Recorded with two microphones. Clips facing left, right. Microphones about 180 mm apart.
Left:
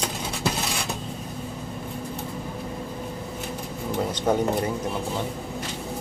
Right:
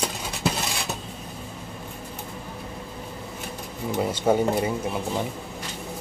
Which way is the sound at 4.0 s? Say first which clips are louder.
Right 2 dB; 5° right (ahead or behind).